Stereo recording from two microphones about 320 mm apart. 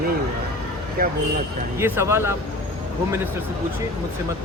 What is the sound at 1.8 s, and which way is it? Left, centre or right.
Speech, centre.